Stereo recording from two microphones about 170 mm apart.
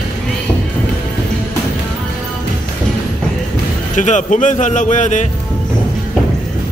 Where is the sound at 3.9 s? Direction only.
45° left (ahead or behind).